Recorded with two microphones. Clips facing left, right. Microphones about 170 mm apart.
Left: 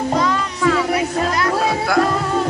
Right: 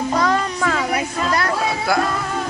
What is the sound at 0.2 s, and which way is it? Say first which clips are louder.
Child singing: even; 45° right (ahead or behind).